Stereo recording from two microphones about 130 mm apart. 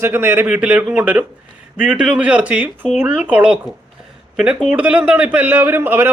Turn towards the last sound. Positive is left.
turn(degrees=-15)  # may be behind; listen again after turning